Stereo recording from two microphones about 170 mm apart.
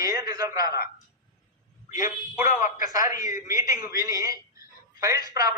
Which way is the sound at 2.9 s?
20° right (ahead or behind).